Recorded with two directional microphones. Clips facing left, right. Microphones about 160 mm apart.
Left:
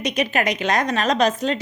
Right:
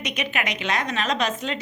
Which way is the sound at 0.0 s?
35° left (ahead or behind).